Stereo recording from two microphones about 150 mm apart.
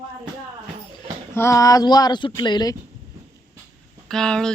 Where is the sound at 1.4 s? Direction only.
20° left (ahead or behind).